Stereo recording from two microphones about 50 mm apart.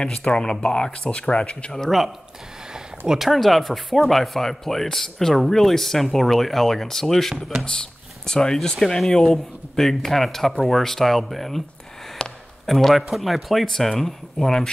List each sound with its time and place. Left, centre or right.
0.0 s speech: centre
3.1 s speech: centre
12.2 s a sound: centre
12.6 s speech: centre